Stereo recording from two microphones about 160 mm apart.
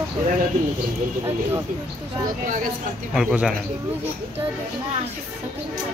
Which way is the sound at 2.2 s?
55° right (ahead or behind).